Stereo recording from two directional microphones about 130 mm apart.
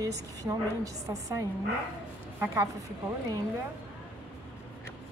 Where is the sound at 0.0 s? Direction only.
25° right (ahead or behind).